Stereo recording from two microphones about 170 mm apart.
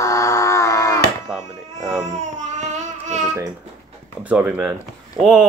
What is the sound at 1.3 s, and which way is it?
Speech, 5° right (ahead or behind).